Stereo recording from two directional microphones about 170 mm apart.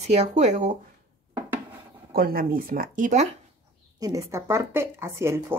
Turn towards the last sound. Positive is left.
turn(degrees=-15)  # may be behind; listen again after turning